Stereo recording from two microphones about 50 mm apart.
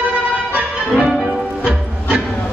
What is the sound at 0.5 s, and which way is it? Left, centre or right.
Music, right.